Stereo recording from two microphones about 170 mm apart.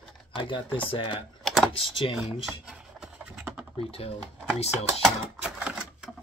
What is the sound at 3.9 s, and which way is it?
Speech, 35° left (ahead or behind).